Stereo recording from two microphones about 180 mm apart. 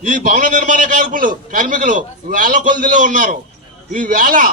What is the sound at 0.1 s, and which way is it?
A man's voice, 50° right (ahead or behind).